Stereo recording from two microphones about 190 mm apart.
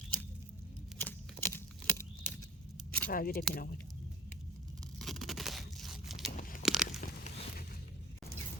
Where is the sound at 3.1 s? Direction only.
50° left (ahead or behind).